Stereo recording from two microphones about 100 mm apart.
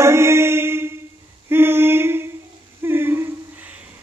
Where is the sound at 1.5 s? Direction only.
20° right (ahead or behind).